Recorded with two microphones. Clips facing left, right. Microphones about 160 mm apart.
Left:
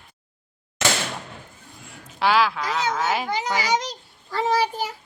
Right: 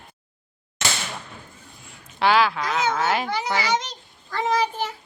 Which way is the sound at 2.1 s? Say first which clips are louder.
Right 1 dB; centre (ahead or behind).